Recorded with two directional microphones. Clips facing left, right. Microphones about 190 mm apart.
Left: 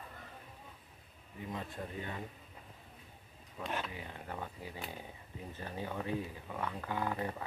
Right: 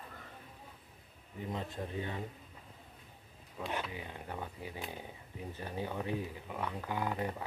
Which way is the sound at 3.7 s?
20° right (ahead or behind).